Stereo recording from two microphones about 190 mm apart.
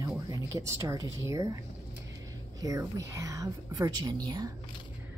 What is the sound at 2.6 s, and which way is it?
A woman's voice, 20° right (ahead or behind).